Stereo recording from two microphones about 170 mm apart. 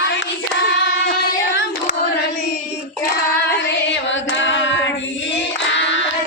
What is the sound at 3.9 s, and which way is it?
Singing, 90° left.